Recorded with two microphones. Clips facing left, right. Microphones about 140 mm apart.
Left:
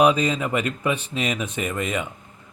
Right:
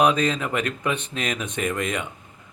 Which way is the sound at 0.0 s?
10° left (ahead or behind).